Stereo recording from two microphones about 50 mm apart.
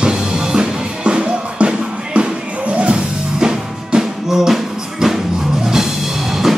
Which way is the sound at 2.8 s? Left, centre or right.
Centre.